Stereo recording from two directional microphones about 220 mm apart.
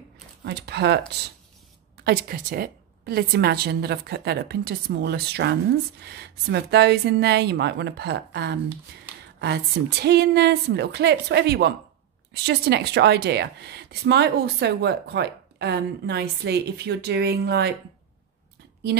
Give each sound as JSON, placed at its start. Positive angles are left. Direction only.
{"t": 0.4, "sound": "a woman's voice", "side_deg": -50}
{"t": 2.0, "sound": "a woman's voice", "side_deg": -45}
{"t": 9.1, "sound": "a sound", "side_deg": -10}
{"t": 9.4, "sound": "a woman's voice", "side_deg": -50}